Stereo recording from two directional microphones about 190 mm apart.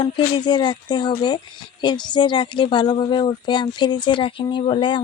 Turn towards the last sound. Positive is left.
turn(degrees=25)  # may be behind; listen again after turning